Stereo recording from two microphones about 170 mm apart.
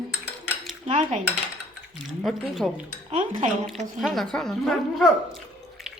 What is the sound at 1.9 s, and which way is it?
Speech, centre (ahead or behind).